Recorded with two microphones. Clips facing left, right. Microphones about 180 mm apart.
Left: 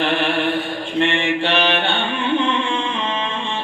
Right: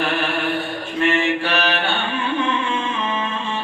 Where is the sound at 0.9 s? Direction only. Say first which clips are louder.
Even; 25° left (ahead or behind).